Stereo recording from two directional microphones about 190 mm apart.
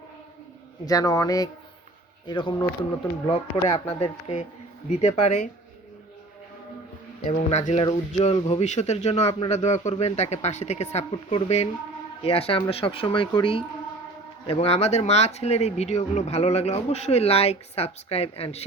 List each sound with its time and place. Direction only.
0.9 s speech: 20° left (ahead or behind); by 5.5 s 35° left (ahead or behind)
7.3 s speech: 40° left (ahead or behind)